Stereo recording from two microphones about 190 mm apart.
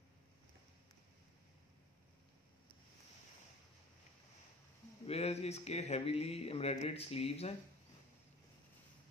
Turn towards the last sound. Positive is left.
turn(degrees=30)  # may be behind; listen again after turning